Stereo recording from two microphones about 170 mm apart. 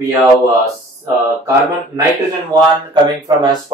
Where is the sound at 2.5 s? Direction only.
25° right (ahead or behind).